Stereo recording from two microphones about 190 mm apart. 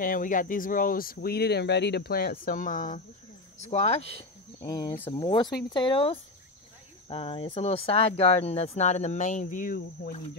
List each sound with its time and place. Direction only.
0.0 s speech: 45° left (ahead or behind)
4.6 s speech: 20° left (ahead or behind); by 10.1 s 50° left (ahead or behind)